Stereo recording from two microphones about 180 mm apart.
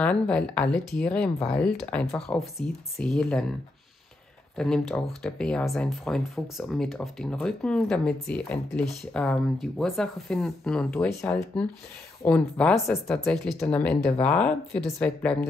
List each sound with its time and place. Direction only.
0.0 s speech: 5° left (ahead or behind)
4.6 s speech: centre (ahead or behind)
11.1 s speech: 15° left (ahead or behind)